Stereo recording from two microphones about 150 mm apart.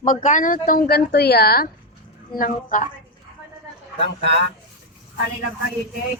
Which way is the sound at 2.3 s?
65° left (ahead or behind).